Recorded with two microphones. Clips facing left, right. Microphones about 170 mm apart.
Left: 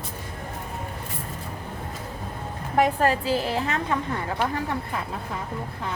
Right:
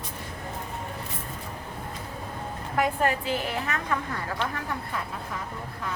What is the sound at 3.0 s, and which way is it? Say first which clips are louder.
Speech: left 4 dB; 35° left (ahead or behind).